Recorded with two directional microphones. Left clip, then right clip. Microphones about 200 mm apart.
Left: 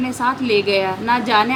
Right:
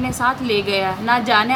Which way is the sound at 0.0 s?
5° left (ahead or behind).